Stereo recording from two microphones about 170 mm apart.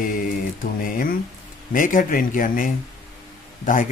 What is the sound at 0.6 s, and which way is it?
Speech, 55° left (ahead or behind).